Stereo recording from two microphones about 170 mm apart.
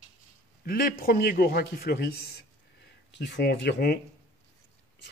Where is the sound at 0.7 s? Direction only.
60° left (ahead or behind).